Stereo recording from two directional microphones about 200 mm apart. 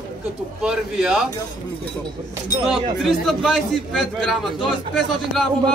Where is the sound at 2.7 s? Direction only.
Centre (ahead or behind).